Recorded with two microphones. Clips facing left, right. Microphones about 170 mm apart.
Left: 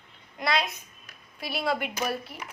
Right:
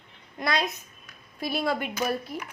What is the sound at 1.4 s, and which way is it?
Speech, 45° right (ahead or behind).